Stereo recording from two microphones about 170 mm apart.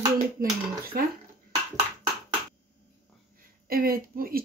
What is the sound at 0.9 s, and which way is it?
Speech, 55° right (ahead or behind).